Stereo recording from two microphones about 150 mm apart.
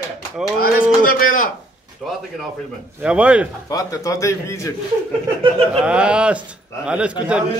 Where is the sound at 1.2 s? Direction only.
65° left (ahead or behind).